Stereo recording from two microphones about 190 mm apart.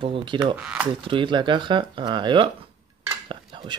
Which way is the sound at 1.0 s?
25° right (ahead or behind).